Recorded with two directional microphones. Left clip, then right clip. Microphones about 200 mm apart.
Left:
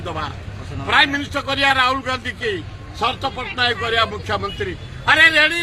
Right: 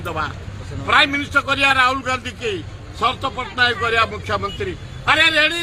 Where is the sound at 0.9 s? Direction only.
Centre (ahead or behind).